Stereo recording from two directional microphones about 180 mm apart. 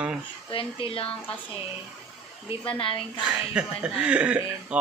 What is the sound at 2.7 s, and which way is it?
Speech, 30° left (ahead or behind).